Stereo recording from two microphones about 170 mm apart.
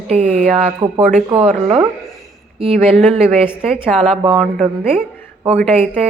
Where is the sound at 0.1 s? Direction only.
35° right (ahead or behind).